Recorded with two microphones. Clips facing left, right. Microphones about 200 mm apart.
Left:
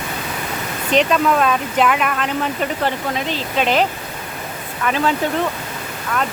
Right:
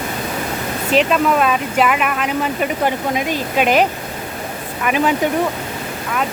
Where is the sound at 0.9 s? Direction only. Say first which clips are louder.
Right 1 dB; 5° right (ahead or behind).